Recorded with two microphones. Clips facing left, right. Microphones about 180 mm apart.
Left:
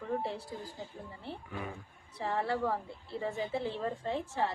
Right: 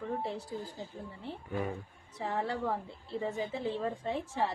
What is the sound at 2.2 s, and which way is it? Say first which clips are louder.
A woman's voice: left 1 dB; 20° right (ahead or behind).